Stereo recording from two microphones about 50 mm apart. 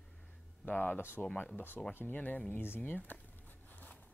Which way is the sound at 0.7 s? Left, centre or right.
Left.